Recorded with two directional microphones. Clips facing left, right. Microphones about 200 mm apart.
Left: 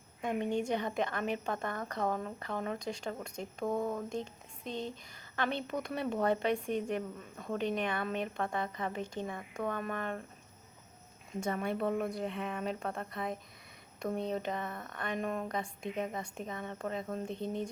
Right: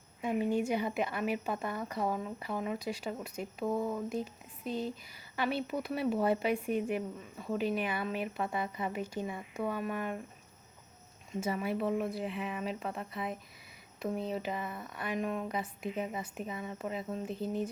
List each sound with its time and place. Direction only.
0.2 s a woman's voice: 5° right (ahead or behind)
11.3 s speech: 5° right (ahead or behind)